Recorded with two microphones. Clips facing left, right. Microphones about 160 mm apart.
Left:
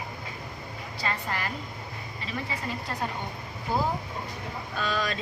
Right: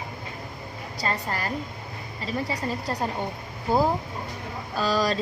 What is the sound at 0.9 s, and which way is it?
Speech, 40° right (ahead or behind).